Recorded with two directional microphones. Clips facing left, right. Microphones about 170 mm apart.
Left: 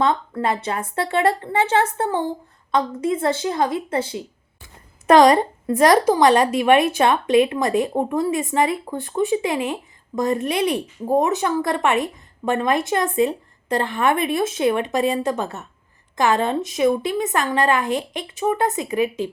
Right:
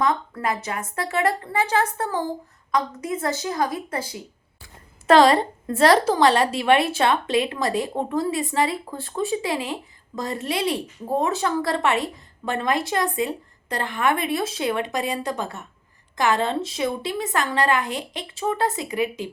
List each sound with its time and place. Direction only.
0.0 s a woman's voice: 30° left (ahead or behind)